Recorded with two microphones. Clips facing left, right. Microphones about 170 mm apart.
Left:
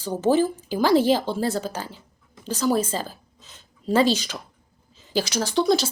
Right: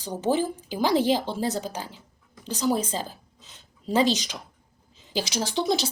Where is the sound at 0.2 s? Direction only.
15° right (ahead or behind).